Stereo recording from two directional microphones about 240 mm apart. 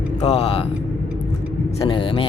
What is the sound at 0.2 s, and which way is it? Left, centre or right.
Speech, left.